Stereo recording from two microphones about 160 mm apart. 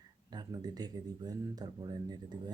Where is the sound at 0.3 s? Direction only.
25° right (ahead or behind).